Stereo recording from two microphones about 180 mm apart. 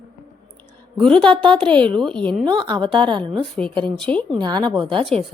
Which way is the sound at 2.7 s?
30° right (ahead or behind).